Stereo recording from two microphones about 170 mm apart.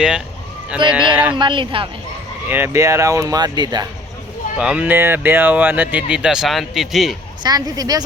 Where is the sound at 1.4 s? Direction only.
30° right (ahead or behind).